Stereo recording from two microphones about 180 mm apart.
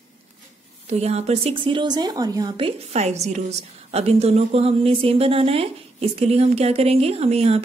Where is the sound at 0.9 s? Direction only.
35° right (ahead or behind).